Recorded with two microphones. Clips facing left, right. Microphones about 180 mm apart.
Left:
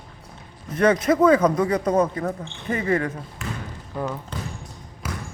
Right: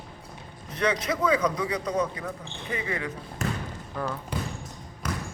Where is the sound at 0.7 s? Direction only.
50° left (ahead or behind).